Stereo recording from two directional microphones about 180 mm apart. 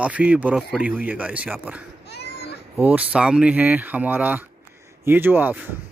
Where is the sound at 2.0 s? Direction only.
65° left (ahead or behind).